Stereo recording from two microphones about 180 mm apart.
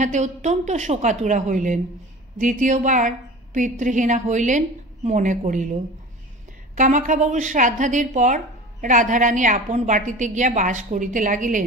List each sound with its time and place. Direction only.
0.0 s a woman's voice: 40° right (ahead or behind)
6.8 s a woman's voice: 45° right (ahead or behind)